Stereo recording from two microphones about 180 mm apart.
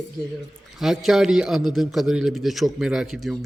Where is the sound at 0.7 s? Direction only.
Centre (ahead or behind).